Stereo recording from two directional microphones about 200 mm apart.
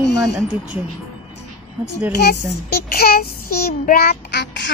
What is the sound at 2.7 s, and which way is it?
A child's voice, 50° left (ahead or behind).